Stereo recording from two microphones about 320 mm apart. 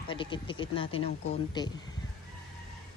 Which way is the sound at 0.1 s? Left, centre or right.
Centre.